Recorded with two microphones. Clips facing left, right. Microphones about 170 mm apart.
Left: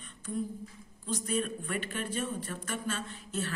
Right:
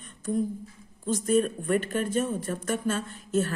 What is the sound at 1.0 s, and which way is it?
Speech, 45° right (ahead or behind).